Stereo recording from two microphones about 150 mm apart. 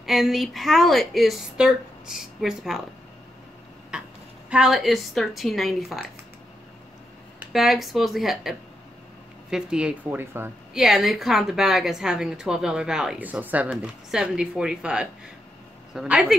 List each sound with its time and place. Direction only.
0.0 s a woman's voice: centre (ahead or behind)
3.9 s a sound: 5° right (ahead or behind)
4.5 s a woman's voice: 5° right (ahead or behind)
7.3 s a woman's voice: centre (ahead or behind)
10.7 s a woman's voice: centre (ahead or behind)